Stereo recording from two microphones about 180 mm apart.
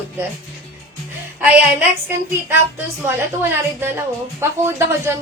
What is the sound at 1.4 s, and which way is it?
A woman's voice, 10° right (ahead or behind).